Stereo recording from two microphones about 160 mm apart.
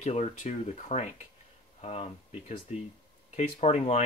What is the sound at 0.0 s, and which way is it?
Speech, 45° left (ahead or behind).